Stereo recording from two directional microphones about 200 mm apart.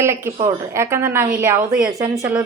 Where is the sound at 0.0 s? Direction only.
15° right (ahead or behind).